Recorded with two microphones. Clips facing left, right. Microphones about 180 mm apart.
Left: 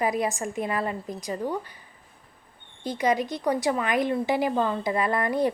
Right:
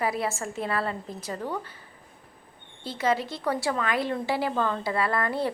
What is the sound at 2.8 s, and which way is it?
A woman's voice, 15° left (ahead or behind).